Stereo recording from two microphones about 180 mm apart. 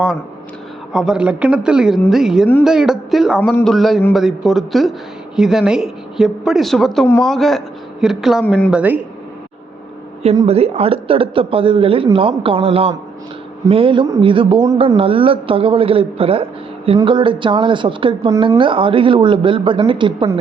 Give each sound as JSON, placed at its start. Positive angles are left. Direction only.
{"t": 0.9, "sound": "a woman's voice", "side_deg": -5}
{"t": 8.7, "sound": "speech", "side_deg": -10}
{"t": 10.4, "sound": "a man's voice", "side_deg": -35}